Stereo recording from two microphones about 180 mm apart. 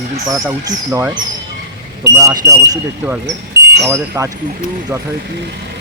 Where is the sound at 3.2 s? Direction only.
70° right (ahead or behind).